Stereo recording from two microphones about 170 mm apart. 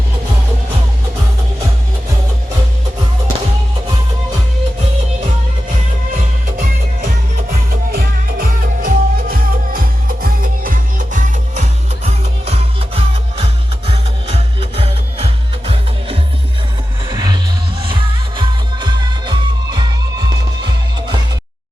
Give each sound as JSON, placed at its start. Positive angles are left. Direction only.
{"t": 7.7, "sound": "music", "side_deg": -60}